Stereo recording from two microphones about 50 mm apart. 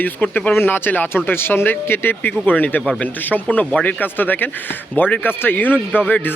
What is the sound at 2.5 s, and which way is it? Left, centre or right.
Speech, left.